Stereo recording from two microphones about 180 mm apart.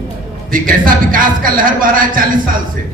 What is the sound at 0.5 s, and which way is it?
A man's voice, 50° right (ahead or behind).